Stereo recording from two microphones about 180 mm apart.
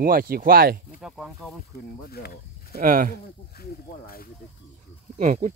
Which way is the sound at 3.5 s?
55° left (ahead or behind).